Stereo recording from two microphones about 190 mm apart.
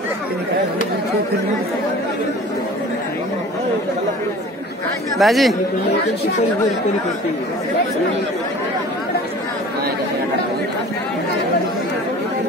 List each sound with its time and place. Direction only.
5.1 s speech: centre (ahead or behind)